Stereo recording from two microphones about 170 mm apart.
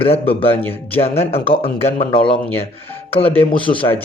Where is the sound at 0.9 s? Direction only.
35° left (ahead or behind).